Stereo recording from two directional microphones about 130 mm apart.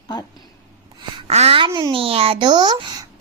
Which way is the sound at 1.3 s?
55° right (ahead or behind).